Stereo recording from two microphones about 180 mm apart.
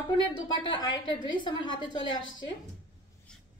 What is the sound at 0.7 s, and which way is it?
A woman's voice, 25° left (ahead or behind).